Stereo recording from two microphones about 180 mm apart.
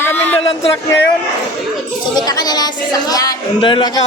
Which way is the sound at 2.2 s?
20° left (ahead or behind).